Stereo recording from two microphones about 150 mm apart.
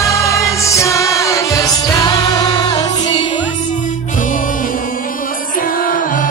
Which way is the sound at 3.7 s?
55° left (ahead or behind).